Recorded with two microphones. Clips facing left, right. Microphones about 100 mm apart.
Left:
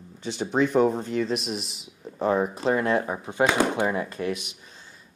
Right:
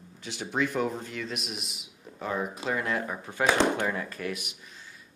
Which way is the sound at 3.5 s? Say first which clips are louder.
Left 2 dB; 10° left (ahead or behind).